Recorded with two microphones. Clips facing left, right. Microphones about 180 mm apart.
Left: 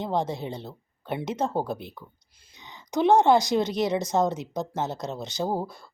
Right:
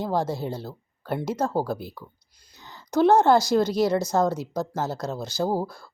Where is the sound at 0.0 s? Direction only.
20° left (ahead or behind).